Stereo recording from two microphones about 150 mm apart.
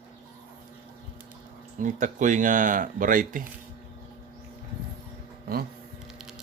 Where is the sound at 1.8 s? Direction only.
60° right (ahead or behind).